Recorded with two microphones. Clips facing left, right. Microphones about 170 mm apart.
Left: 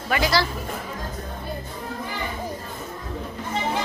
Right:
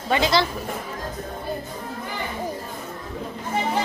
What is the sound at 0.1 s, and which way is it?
Speech, 20° right (ahead or behind).